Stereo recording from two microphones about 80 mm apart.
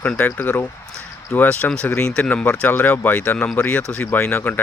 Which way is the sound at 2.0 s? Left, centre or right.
Centre.